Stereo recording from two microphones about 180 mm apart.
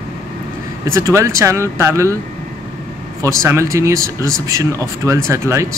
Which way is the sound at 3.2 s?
15° right (ahead or behind).